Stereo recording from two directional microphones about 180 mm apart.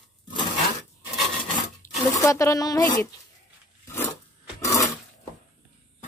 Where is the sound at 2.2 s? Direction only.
15° left (ahead or behind).